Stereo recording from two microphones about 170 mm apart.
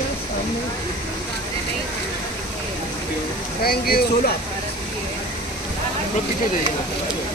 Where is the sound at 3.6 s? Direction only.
65° left (ahead or behind).